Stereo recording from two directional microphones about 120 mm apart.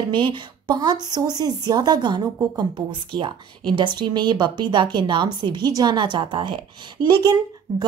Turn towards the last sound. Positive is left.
turn(degrees=-35)  # may be behind; listen again after turning